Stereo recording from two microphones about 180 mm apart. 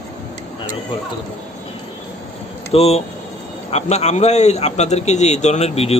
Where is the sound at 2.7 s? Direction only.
35° left (ahead or behind).